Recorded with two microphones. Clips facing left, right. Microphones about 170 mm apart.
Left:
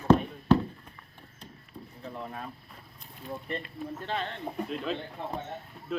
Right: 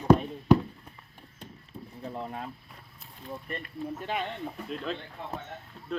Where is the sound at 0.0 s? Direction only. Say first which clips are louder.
Right 1 dB; 10° right (ahead or behind).